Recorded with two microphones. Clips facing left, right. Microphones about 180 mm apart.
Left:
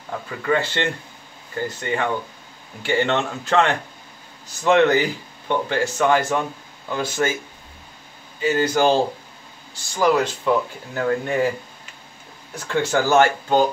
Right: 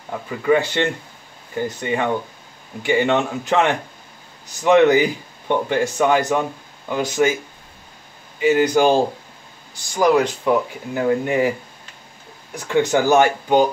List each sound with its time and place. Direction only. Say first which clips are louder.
0.5 s speech: right 4 dB; 15° right (ahead or behind)
8.4 s speech: right 4 dB; 15° right (ahead or behind)
12.5 s speech: right 3 dB; 15° right (ahead or behind)